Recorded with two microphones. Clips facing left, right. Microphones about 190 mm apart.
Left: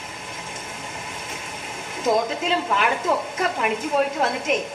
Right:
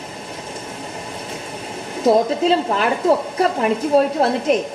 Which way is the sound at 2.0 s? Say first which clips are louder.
Right 7 dB; 35° right (ahead or behind).